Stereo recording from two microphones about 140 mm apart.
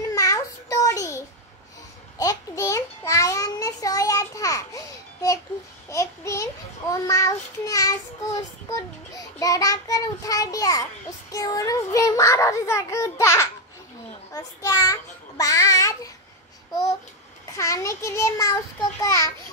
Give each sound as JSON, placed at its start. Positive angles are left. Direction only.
{"t": 0.1, "sound": "a sound", "side_deg": 20}
{"t": 5.9, "sound": "child singing", "side_deg": 20}
{"t": 17.5, "sound": "child singing", "side_deg": 20}